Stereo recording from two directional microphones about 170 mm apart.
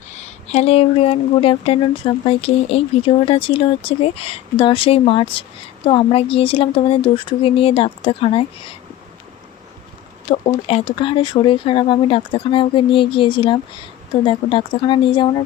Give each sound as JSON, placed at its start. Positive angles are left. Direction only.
{"t": 0.1, "sound": "speech", "side_deg": 40}
{"t": 10.2, "sound": "speech", "side_deg": 35}